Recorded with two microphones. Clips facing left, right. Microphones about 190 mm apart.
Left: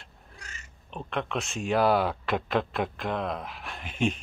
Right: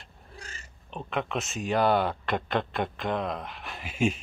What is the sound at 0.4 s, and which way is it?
Pig, 30° right (ahead or behind).